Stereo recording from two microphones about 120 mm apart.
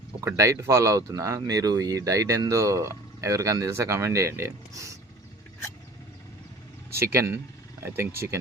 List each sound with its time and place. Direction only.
0.3 s speech: 25° right (ahead or behind)
6.9 s speech: 25° right (ahead or behind)